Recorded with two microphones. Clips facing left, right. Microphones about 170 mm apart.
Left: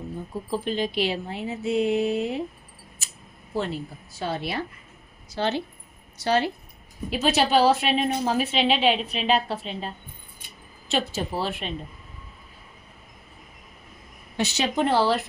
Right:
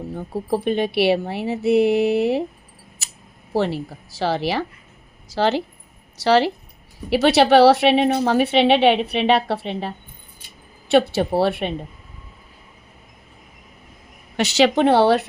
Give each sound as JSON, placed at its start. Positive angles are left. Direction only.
{"t": 0.1, "sound": "a woman's voice", "side_deg": -65}
{"t": 3.5, "sound": "a woman's voice", "side_deg": -85}
{"t": 7.1, "sound": "a woman's voice", "side_deg": -75}
{"t": 14.3, "sound": "a woman's voice", "side_deg": -90}